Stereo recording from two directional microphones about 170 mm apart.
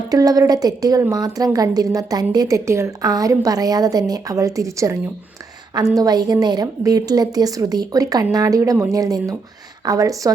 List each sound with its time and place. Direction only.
0.1 s a woman's voice: 20° right (ahead or behind)
6.0 s a woman's voice: 20° right (ahead or behind)